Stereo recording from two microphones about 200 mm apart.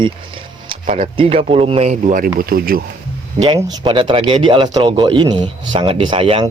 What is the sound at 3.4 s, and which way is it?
Speech, 25° right (ahead or behind).